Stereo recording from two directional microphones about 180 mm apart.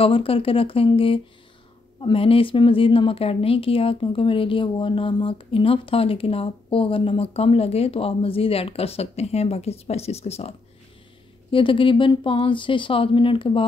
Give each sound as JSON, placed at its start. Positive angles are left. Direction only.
{"t": 0.0, "sound": "a woman's voice", "side_deg": 30}
{"t": 11.5, "sound": "speech", "side_deg": 30}